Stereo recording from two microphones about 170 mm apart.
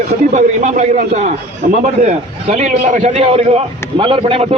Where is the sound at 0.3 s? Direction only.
45° right (ahead or behind).